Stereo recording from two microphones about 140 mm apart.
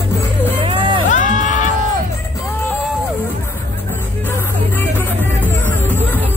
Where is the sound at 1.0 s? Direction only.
65° left (ahead or behind).